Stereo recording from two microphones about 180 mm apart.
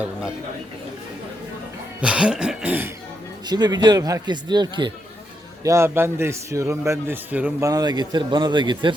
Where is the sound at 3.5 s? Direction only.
25° right (ahead or behind).